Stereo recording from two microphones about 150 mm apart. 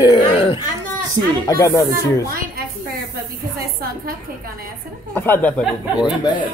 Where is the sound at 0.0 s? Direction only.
35° left (ahead or behind).